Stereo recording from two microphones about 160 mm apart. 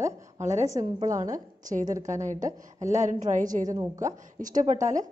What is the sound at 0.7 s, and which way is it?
Speech, 20° right (ahead or behind).